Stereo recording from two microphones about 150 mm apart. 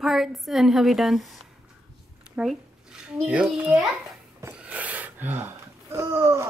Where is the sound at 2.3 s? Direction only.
Centre (ahead or behind).